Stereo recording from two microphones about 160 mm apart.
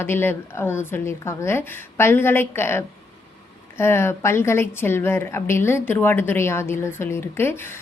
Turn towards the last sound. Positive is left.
turn(degrees=15)  # may be behind; listen again after turning